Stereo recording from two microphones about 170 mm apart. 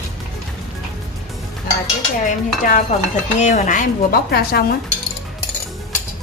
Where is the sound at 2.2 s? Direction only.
50° left (ahead or behind).